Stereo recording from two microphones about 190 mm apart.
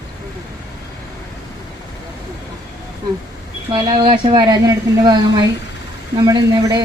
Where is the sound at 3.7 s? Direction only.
25° right (ahead or behind).